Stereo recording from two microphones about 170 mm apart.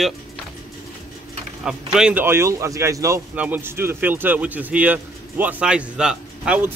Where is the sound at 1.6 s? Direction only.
5° right (ahead or behind).